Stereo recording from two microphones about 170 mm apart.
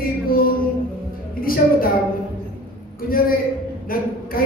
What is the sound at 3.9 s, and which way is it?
Speech, 60° left (ahead or behind).